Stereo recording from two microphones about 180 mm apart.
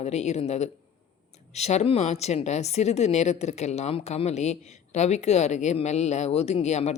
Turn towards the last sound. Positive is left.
turn(degrees=40)  # may be behind; listen again after turning